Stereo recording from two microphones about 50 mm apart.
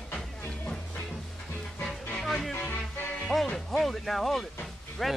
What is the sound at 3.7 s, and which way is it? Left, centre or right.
Speech, centre.